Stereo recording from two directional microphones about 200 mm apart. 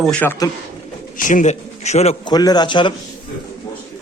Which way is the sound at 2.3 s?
20° left (ahead or behind).